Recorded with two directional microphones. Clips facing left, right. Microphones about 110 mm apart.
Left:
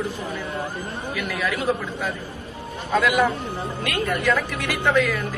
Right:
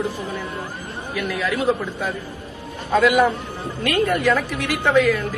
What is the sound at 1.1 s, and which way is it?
A woman's voice, 15° right (ahead or behind).